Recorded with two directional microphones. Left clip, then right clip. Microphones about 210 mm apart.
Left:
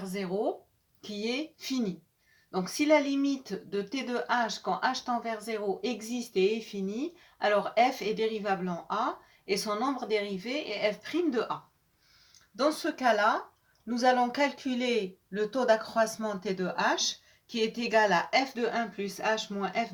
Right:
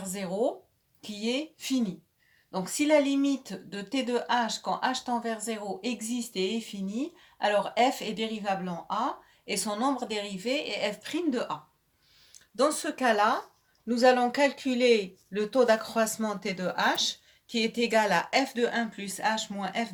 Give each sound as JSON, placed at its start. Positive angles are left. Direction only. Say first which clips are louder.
{"t": 1.0, "sound": "speech", "louder": "right 2 dB", "side_deg": -35}
{"t": 12.5, "sound": "speech", "louder": "right 2 dB", "side_deg": -40}